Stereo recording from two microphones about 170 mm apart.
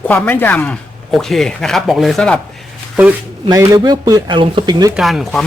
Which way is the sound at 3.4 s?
20° right (ahead or behind).